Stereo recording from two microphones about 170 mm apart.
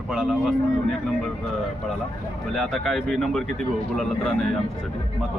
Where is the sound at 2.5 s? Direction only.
Centre (ahead or behind).